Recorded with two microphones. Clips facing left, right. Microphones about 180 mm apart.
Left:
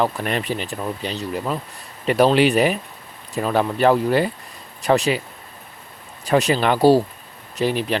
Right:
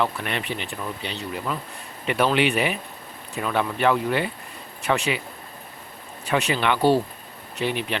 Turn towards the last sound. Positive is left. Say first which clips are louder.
# left 5 dB
turn(degrees=40)  # may be behind; listen again after turning